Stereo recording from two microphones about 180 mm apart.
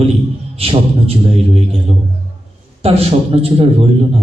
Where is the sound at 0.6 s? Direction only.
30° right (ahead or behind).